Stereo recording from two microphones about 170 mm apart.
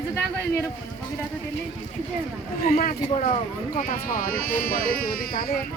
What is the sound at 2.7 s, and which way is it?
Speech, 55° left (ahead or behind).